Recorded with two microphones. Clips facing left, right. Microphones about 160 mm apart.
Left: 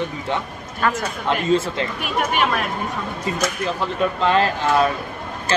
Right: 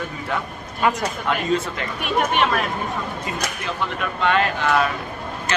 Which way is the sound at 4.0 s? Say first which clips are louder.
Left 3 dB; 30° left (ahead or behind).